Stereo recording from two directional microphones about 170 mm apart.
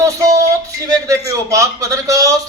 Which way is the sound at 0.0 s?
20° right (ahead or behind).